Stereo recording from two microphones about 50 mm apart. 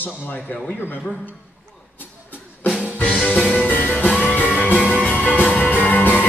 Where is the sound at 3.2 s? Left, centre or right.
Left.